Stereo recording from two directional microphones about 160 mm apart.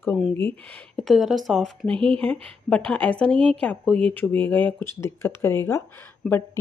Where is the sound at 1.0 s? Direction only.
Centre (ahead or behind).